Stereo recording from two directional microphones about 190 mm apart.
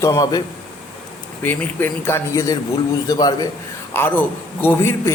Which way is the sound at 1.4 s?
10° left (ahead or behind).